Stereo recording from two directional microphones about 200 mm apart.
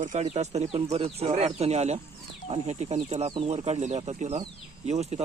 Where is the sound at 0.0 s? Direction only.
35° right (ahead or behind).